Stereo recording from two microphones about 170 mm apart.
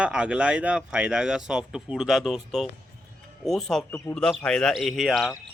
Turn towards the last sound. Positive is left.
turn(degrees=0)  # may be behind; listen again after turning